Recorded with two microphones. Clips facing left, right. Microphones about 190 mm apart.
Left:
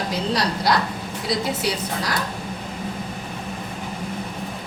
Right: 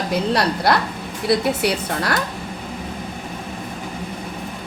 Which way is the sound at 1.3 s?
60° right (ahead or behind).